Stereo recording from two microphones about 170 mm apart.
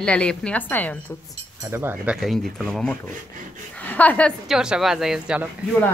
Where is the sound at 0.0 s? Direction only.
5° left (ahead or behind).